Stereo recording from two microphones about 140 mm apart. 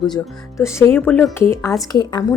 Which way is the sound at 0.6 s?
20° left (ahead or behind).